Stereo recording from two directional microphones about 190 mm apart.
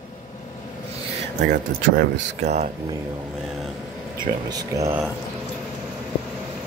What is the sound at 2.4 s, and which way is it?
Speech, 35° right (ahead or behind).